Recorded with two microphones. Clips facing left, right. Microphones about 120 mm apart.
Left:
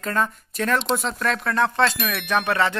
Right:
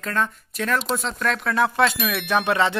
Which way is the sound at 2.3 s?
15° right (ahead or behind).